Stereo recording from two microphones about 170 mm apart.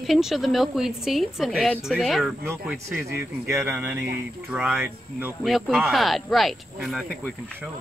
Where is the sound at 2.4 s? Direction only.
15° right (ahead or behind).